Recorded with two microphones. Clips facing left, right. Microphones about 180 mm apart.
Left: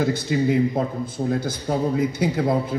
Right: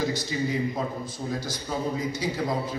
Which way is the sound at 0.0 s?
60° left (ahead or behind).